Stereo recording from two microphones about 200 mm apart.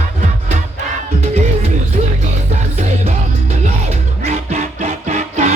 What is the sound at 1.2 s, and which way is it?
Music, 30° right (ahead or behind).